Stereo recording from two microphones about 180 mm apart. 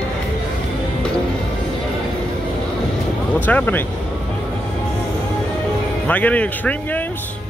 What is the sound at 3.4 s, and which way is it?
Speech, 10° left (ahead or behind).